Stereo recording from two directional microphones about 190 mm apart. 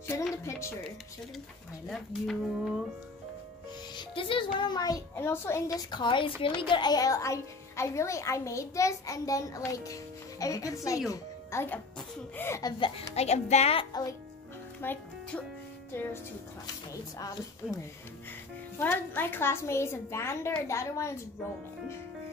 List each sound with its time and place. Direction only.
0.1 s a child's voice: 15° left (ahead or behind)
1.9 s speech: centre (ahead or behind)
3.9 s a child's voice: 25° left (ahead or behind)
14.8 s a child's voice: 10° left (ahead or behind)
18.8 s a child's voice: 10° left (ahead or behind)